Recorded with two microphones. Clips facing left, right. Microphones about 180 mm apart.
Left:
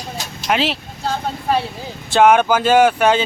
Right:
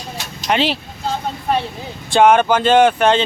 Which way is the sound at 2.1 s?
5° left (ahead or behind).